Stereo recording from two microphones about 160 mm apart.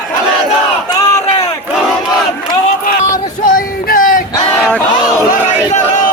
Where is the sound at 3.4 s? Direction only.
60° left (ahead or behind).